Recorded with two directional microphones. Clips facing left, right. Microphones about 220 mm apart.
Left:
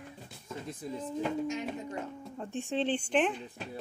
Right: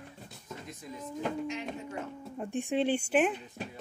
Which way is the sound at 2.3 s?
15° right (ahead or behind).